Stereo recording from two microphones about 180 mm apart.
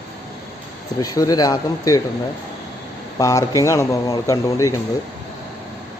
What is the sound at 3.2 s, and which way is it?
Speech, 20° left (ahead or behind).